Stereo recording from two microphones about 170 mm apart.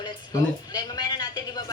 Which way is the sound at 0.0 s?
25° left (ahead or behind).